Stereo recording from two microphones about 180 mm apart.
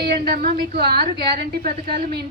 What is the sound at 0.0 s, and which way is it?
A woman's voice, 60° right (ahead or behind).